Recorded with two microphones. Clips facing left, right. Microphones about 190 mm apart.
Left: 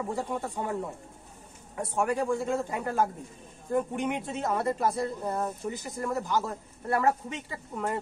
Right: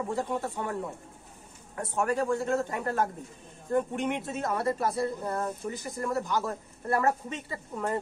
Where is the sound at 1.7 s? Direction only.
10° left (ahead or behind).